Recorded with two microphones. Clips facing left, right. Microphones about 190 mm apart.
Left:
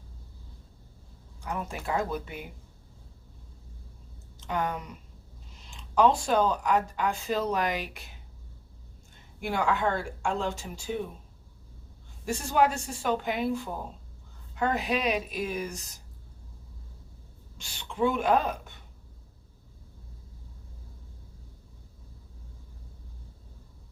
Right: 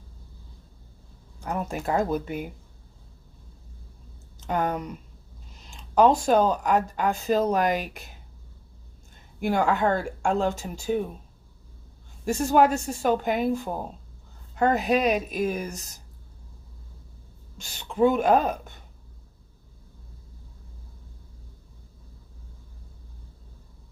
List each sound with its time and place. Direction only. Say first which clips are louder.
1.5 s speech: right 5 dB; 45° right (ahead or behind)
4.4 s speech: right 4 dB; 45° right (ahead or behind)
9.4 s speech: right 5 dB; 45° right (ahead or behind)
12.2 s speech: right 5 dB; 45° right (ahead or behind)
17.6 s speech: right 6 dB; 45° right (ahead or behind)